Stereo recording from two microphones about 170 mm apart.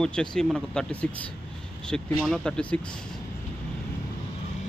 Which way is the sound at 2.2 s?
5° left (ahead or behind).